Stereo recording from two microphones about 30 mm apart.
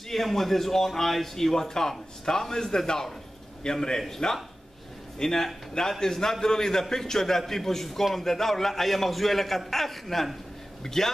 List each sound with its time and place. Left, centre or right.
0.1 s a man's voice: centre
4.2 s speech: left
5.2 s a man's voice: centre